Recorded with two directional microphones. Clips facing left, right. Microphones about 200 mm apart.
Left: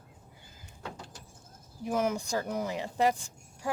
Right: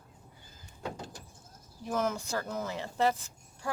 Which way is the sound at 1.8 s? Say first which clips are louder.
Left 2 dB; 10° left (ahead or behind).